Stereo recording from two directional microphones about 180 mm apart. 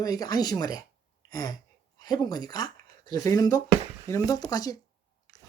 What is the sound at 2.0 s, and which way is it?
Speech, 20° left (ahead or behind).